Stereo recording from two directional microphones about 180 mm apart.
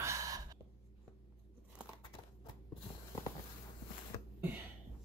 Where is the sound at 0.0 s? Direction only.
15° right (ahead or behind).